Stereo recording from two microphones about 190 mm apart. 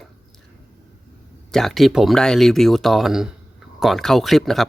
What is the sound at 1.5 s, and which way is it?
Speech, centre (ahead or behind).